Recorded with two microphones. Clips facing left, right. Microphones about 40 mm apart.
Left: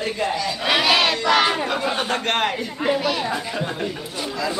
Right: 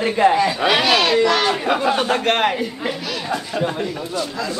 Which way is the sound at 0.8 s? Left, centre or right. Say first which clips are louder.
Right 2 dB; centre.